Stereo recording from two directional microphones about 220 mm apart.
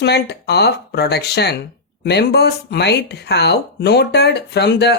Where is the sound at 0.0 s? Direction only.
50° left (ahead or behind).